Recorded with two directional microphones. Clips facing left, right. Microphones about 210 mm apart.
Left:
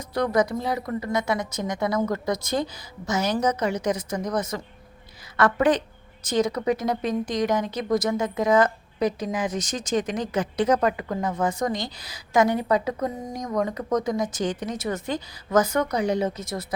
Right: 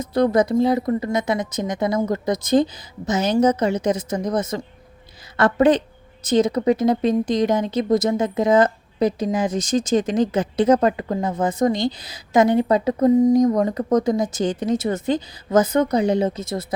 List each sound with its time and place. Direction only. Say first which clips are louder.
0.0 s speech: right 5 dB; 25° right (ahead or behind)